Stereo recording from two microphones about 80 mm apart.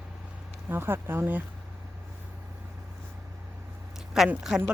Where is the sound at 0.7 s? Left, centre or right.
Right.